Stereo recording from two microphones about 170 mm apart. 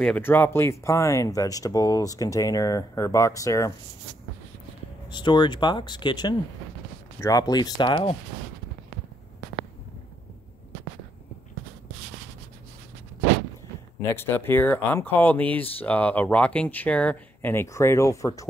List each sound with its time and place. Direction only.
0.0 s speech: 10° left (ahead or behind)
5.1 s speech: 25° left (ahead or behind)
14.1 s speech: 15° left (ahead or behind)